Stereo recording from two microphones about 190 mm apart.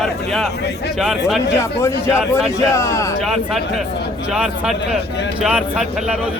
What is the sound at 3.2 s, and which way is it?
Speech, centre (ahead or behind).